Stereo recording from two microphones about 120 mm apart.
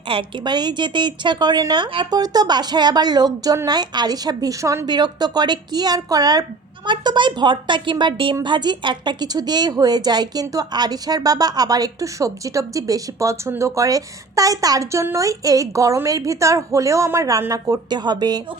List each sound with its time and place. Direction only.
0.1 s a woman's voice: 45° right (ahead or behind); by 4.9 s 25° right (ahead or behind)
4.9 s a woman's voice: 35° right (ahead or behind)